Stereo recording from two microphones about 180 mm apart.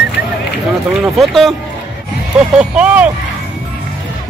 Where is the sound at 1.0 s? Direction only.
Centre (ahead or behind).